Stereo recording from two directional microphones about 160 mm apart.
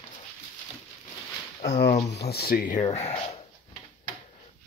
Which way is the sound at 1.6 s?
90° left.